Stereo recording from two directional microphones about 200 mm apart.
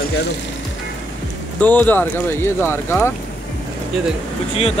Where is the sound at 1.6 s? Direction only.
10° left (ahead or behind).